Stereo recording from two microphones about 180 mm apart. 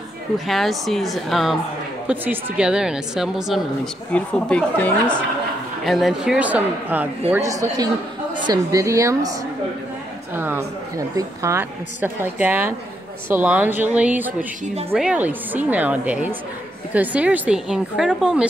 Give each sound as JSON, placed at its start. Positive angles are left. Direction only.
{"t": 0.5, "sound": "a woman's voice", "side_deg": 0}